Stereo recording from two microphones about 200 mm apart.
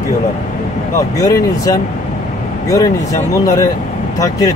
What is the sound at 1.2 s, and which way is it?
Speech, 15° left (ahead or behind).